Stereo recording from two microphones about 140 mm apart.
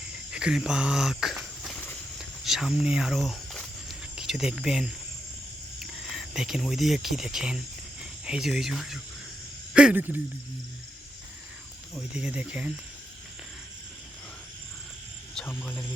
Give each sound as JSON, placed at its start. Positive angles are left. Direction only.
{"t": 0.3, "sound": "speech", "side_deg": -5}
{"t": 2.1, "sound": "a sound", "side_deg": 0}
{"t": 4.5, "sound": "speech", "side_deg": -5}
{"t": 11.9, "sound": "speech", "side_deg": -5}
{"t": 15.4, "sound": "speech", "side_deg": 15}